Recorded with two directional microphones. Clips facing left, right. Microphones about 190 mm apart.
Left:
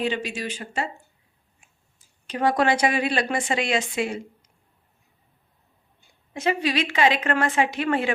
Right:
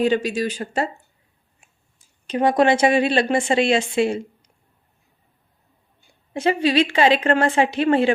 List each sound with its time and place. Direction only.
0.0 s speech: 40° right (ahead or behind)
2.2 s a woman's voice: 20° right (ahead or behind)
6.3 s a woman's voice: 30° right (ahead or behind)